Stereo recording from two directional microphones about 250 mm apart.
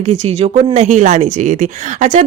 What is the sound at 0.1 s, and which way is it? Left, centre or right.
Speech, right.